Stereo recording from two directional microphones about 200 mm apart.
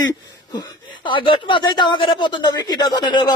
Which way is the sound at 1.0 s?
25° left (ahead or behind).